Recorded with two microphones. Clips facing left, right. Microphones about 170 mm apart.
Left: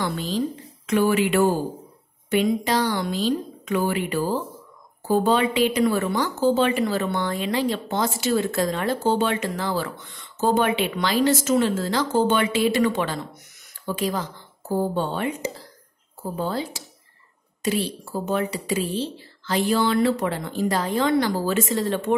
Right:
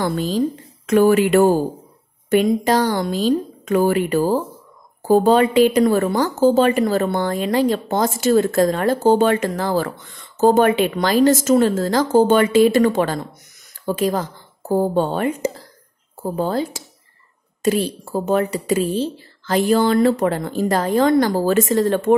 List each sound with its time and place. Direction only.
0.0 s a woman's voice: 45° right (ahead or behind)